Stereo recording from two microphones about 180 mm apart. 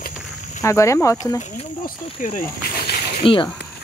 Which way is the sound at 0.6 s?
15° left (ahead or behind).